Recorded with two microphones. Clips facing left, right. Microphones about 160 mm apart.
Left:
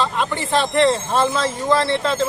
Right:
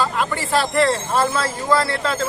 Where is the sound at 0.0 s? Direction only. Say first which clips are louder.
Even; 5° right (ahead or behind).